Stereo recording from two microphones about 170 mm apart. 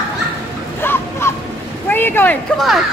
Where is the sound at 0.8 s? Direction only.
15° left (ahead or behind).